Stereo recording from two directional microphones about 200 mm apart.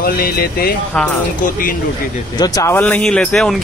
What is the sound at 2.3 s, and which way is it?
Speech, 20° left (ahead or behind).